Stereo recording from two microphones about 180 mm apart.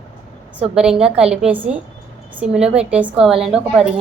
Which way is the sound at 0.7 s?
5° right (ahead or behind).